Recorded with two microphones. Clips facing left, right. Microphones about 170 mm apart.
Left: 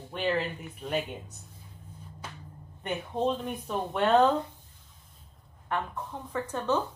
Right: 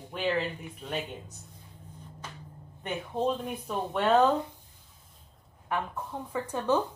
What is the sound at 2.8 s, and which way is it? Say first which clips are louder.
Speech: left 1 dB; 5° right (ahead or behind).